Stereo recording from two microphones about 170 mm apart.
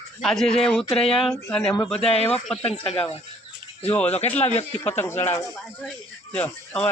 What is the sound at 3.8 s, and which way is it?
Speech, 15° left (ahead or behind).